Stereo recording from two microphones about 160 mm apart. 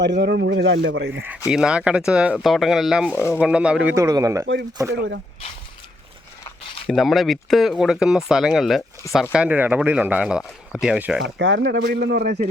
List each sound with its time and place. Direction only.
0.0 s speech: 90° right
1.5 s speech: 5° right (ahead or behind)
3.2 s speech: 15° left (ahead or behind)
3.4 s speech: 5° right (ahead or behind)
3.9 s speech: 20° right (ahead or behind)
4.9 s speech: 90° right
6.8 s speech: centre (ahead or behind)
11.2 s speech: 90° right; by 12.3 s 75° right (ahead or behind)